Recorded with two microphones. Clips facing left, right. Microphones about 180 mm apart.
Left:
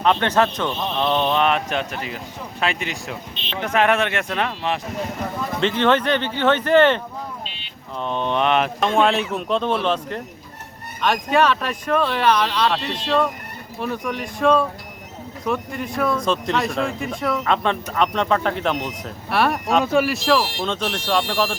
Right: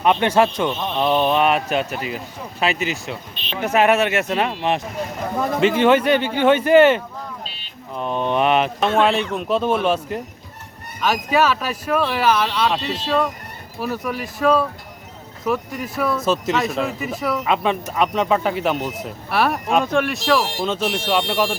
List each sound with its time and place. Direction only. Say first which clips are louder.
0.0 s speech: right 2 dB; 10° right (ahead or behind)
7.4 s a sound: even; 40° right (ahead or behind)
7.9 s speech: right 2 dB; 5° right (ahead or behind)